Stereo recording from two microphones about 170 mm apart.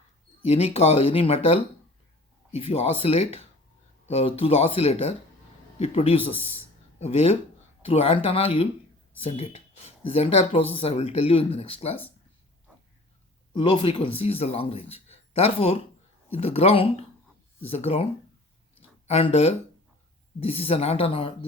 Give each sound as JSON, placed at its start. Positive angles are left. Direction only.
{"t": 0.4, "sound": "speech", "side_deg": 40}
{"t": 2.6, "sound": "speech", "side_deg": 35}
{"t": 13.5, "sound": "speech", "side_deg": 30}
{"t": 18.8, "sound": "a sound", "side_deg": 35}
{"t": 20.4, "sound": "speech", "side_deg": 35}